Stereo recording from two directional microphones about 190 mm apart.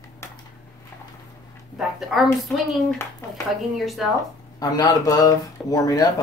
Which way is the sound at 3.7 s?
Centre (ahead or behind).